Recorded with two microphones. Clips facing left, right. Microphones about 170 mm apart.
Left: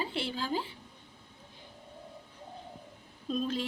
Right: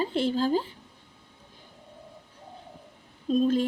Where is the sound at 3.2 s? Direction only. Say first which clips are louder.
Right 9 dB; 40° right (ahead or behind).